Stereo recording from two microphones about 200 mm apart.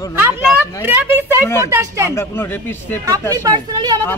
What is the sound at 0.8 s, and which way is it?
Speech, 10° right (ahead or behind).